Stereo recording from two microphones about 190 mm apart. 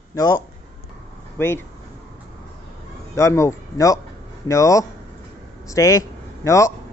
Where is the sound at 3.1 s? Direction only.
15° left (ahead or behind).